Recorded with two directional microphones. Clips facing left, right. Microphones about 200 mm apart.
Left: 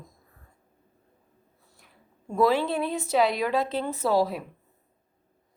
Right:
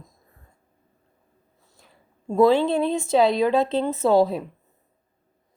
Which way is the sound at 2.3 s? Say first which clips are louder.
Right 6 dB; 25° right (ahead or behind).